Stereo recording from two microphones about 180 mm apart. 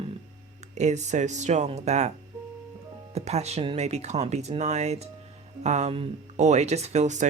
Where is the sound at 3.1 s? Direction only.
35° right (ahead or behind).